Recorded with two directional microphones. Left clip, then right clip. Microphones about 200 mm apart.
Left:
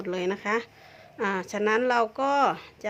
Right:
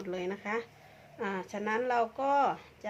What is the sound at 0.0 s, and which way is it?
A woman's voice, 40° left (ahead or behind).